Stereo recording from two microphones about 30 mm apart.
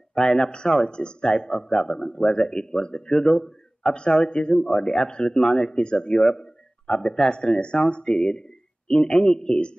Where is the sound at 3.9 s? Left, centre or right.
Left.